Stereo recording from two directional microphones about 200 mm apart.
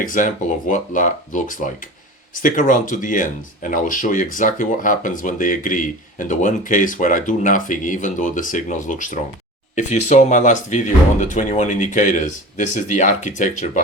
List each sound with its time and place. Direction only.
0.0 s speech: 40° left (ahead or behind)